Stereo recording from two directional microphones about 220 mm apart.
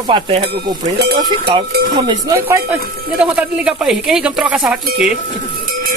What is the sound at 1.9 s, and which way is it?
A woman's voice, 20° right (ahead or behind).